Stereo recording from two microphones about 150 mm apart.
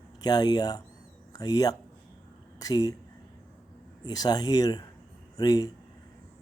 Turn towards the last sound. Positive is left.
turn(degrees=25)  # may be behind; listen again after turning